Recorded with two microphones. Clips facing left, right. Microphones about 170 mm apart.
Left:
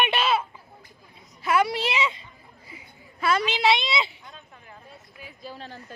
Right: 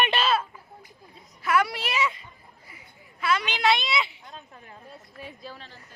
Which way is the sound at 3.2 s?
35° left (ahead or behind).